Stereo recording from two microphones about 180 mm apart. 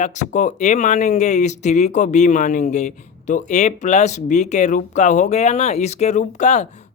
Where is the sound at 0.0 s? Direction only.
40° left (ahead or behind).